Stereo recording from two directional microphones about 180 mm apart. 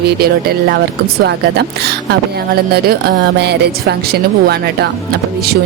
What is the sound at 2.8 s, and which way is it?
Speech, 65° right (ahead or behind).